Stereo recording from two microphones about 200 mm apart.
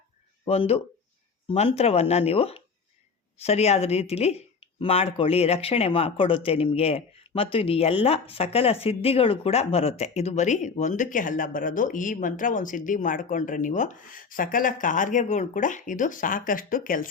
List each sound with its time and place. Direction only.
0.4 s speech: 30° left (ahead or behind)